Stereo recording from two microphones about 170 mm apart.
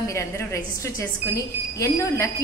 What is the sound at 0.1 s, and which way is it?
A woman's voice, 15° left (ahead or behind).